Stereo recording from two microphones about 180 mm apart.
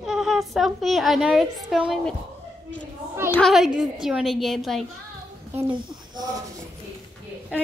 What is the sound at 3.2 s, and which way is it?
A woman's voice, 5° left (ahead or behind).